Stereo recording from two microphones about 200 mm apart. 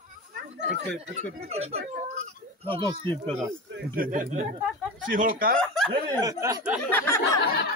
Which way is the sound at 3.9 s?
45° right (ahead or behind).